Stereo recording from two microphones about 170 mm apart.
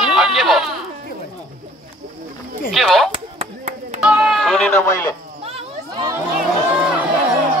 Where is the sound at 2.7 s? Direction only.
Centre (ahead or behind).